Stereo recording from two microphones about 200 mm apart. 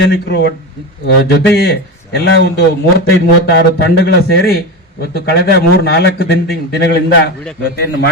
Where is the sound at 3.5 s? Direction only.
60° left (ahead or behind).